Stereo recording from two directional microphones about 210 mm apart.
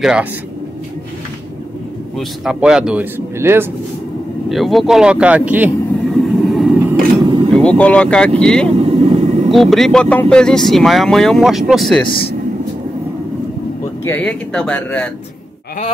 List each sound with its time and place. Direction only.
0.0 s speech: 5° right (ahead or behind)
2.1 s speech: 5° right (ahead or behind)
4.5 s vehicle: centre (ahead or behind)
7.2 s vehicle: 25° right (ahead or behind)
7.5 s speech: 5° left (ahead or behind)
8.6 s vehicle: 30° right (ahead or behind)
9.5 s speech: centre (ahead or behind)
14.0 s speech: 10° left (ahead or behind)